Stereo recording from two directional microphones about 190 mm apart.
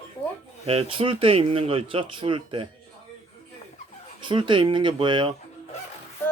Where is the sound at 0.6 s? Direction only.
30° right (ahead or behind).